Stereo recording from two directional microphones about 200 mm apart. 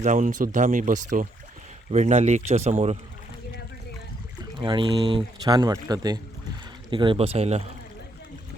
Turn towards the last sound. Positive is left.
turn(degrees=-30)  # may be behind; listen again after turning